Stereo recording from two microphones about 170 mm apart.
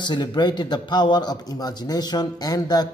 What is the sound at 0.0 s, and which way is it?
A man's voice, 25° left (ahead or behind).